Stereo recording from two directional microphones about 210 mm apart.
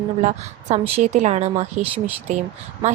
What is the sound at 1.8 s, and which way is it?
Speech, 10° right (ahead or behind).